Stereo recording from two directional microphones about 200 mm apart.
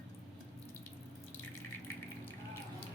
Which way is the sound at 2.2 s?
10° left (ahead or behind).